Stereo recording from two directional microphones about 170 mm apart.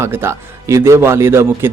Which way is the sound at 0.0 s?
15° right (ahead or behind).